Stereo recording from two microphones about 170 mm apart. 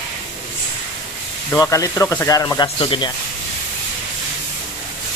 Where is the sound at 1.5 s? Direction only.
20° left (ahead or behind).